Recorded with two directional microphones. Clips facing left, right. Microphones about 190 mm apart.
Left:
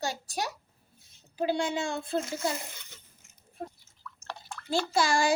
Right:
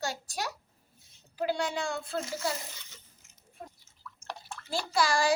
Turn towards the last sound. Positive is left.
turn(degrees=25)  # may be behind; listen again after turning